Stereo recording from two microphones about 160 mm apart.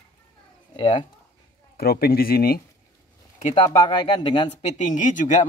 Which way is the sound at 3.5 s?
30° left (ahead or behind).